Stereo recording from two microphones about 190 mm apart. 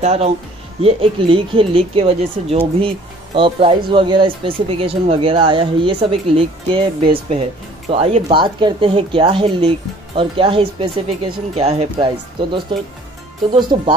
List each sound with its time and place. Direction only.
0.0 s speech: 35° right (ahead or behind)